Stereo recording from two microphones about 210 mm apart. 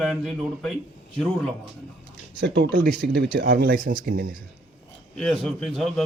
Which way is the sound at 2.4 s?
55° right (ahead or behind).